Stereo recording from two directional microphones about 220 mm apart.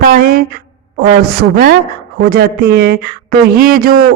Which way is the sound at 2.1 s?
45° right (ahead or behind).